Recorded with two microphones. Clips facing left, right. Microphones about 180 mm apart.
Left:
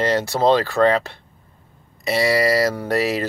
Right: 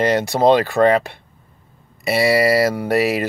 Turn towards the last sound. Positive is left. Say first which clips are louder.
# right 3 dB
turn(degrees=-10)  # may be behind; listen again after turning